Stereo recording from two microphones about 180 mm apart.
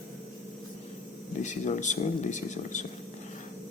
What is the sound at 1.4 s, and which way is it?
Speech, 40° left (ahead or behind).